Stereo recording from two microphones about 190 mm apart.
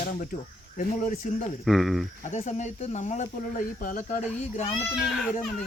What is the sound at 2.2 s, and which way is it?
Speech, 35° left (ahead or behind).